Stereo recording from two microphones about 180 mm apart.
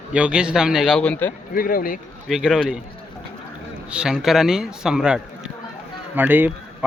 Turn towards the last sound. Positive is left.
turn(degrees=-10)  # may be behind; listen again after turning